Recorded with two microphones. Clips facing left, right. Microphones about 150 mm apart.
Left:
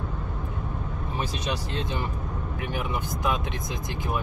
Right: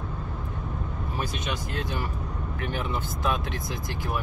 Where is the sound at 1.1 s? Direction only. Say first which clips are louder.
Left 2 dB; 25° left (ahead or behind).